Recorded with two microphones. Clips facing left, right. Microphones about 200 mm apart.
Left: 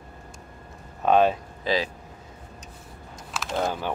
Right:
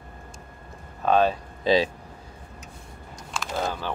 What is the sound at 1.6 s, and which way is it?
Speech, 25° right (ahead or behind).